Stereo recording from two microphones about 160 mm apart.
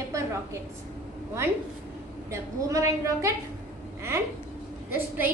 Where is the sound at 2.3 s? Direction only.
20° right (ahead or behind).